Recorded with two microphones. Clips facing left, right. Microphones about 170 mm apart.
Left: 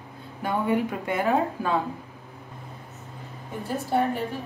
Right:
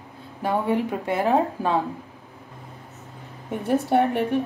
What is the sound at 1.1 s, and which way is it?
Speech, 35° right (ahead or behind).